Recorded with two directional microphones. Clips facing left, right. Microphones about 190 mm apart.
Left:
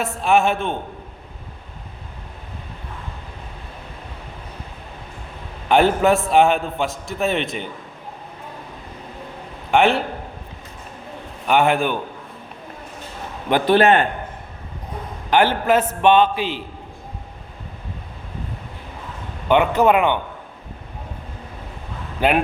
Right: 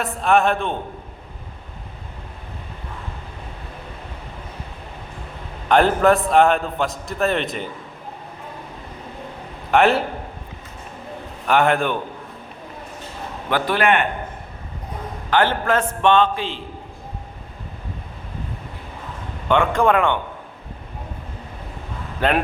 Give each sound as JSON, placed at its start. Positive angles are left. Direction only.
{"t": 0.0, "sound": "a man's voice", "side_deg": 0}
{"t": 5.6, "sound": "a man's voice", "side_deg": 5}
{"t": 9.7, "sound": "a man's voice", "side_deg": 0}
{"t": 11.4, "sound": "a man's voice", "side_deg": 0}
{"t": 13.5, "sound": "a man's voice", "side_deg": 25}
{"t": 15.3, "sound": "a man's voice", "side_deg": 10}
{"t": 19.5, "sound": "a man's voice", "side_deg": 5}